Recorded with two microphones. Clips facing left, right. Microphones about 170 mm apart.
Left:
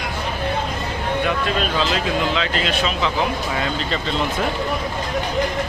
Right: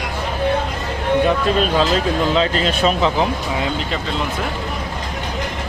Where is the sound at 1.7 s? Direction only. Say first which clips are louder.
Right 4 dB; 40° right (ahead or behind).